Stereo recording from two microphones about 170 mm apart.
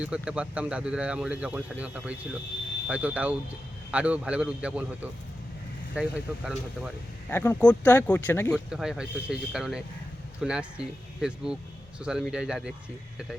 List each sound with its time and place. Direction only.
0.0 s speech: 5° right (ahead or behind)
6.0 s speech: 5° right (ahead or behind)
7.3 s speech: 10° left (ahead or behind)
8.7 s speech: 5° right (ahead or behind)